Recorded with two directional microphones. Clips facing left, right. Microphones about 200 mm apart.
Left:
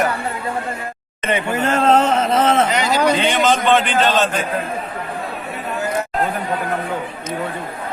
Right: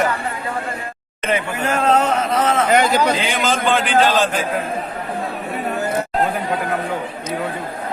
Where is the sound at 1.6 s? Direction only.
25° left (ahead or behind).